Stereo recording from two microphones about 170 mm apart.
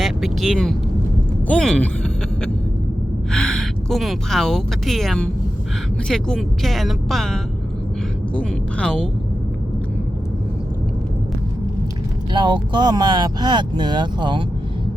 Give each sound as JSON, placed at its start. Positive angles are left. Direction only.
{"t": 0.0, "sound": "speech", "side_deg": 0}
{"t": 3.3, "sound": "speech", "side_deg": 5}
{"t": 8.4, "sound": "speech", "side_deg": 5}
{"t": 12.3, "sound": "speech", "side_deg": -25}